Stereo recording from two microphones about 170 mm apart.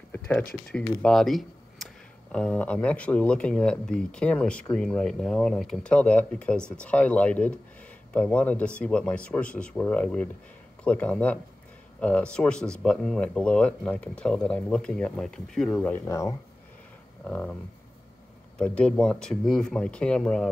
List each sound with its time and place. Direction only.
0.1 s a sound: 10° left (ahead or behind)
0.7 s speech: 5° left (ahead or behind)
16.1 s speech: 20° left (ahead or behind)
17.3 s speech: 5° left (ahead or behind)
18.6 s speech: 5° left (ahead or behind)